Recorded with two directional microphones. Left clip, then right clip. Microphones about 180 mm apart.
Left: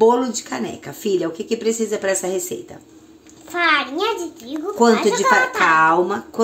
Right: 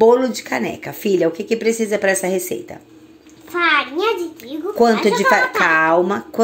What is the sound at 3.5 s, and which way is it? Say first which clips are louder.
Speech: right 1 dB; 40° left (ahead or behind).